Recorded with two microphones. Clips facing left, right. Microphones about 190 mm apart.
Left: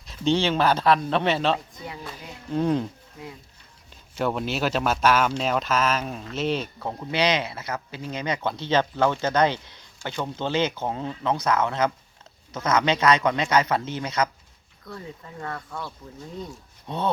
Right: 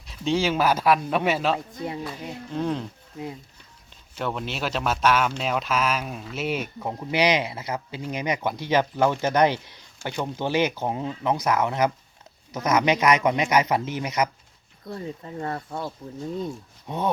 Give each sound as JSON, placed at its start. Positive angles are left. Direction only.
{"t": 0.0, "sound": "a man's voice", "side_deg": 0}
{"t": 4.2, "sound": "a man's voice", "side_deg": 5}
{"t": 14.8, "sound": "speech", "side_deg": -30}
{"t": 16.8, "sound": "speech", "side_deg": -10}